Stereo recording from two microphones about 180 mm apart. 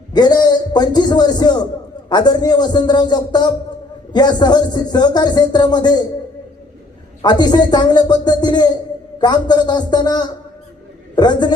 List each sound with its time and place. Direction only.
0.1 s a man's voice: 25° left (ahead or behind)
7.2 s a man's voice: 25° left (ahead or behind)